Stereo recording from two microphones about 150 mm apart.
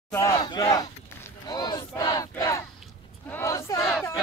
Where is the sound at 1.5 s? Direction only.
30° left (ahead or behind).